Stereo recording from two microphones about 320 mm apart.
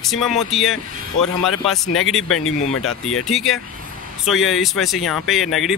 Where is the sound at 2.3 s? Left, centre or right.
Left.